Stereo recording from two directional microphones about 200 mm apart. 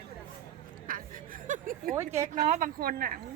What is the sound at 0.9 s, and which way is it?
Chuckle, 45° right (ahead or behind).